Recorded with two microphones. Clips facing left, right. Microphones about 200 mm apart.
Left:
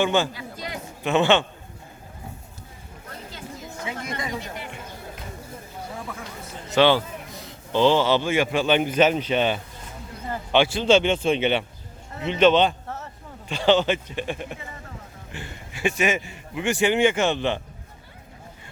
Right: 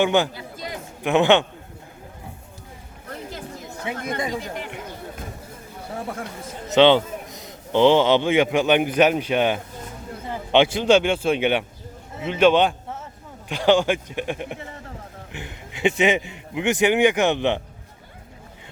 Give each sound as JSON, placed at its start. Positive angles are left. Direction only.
{"t": 0.0, "sound": "a man's voice", "side_deg": -15}
{"t": 3.8, "sound": "speech", "side_deg": -55}
{"t": 6.7, "sound": "a man's voice", "side_deg": -20}